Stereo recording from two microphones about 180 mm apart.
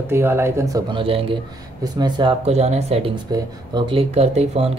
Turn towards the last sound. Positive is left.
turn(degrees=-35)  # may be behind; listen again after turning